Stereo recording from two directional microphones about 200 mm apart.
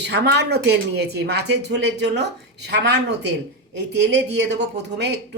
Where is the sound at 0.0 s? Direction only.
60° right (ahead or behind).